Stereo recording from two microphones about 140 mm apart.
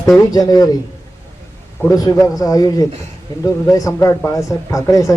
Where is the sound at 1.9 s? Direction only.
25° left (ahead or behind).